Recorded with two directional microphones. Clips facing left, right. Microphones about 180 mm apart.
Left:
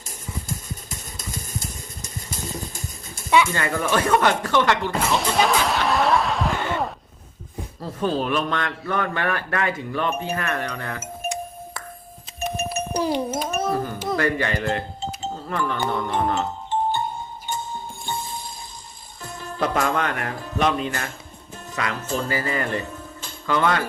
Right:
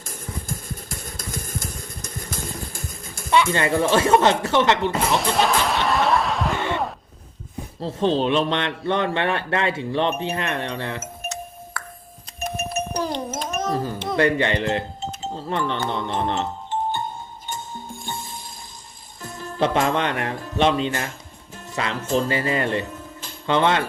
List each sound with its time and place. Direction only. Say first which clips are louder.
0.0 s music: right 1 dB; 50° right (ahead or behind)
1.2 s vehicle: right 1 dB; 50° right (ahead or behind)
3.5 s speech: right 4 dB; 25° right (ahead or behind)
5.1 s snicker: left 2 dB; centre (ahead or behind)
7.8 s speech: right 3 dB; 25° right (ahead or behind)
11.0 s music: left 4 dB; 15° left (ahead or behind)
12.4 s a sound: left 1 dB; centre (ahead or behind)
12.9 s music: left 3 dB; 10° left (ahead or behind)
14.2 s speech: right 5 dB; 25° right (ahead or behind)
19.2 s speech: right 3 dB; 30° right (ahead or behind)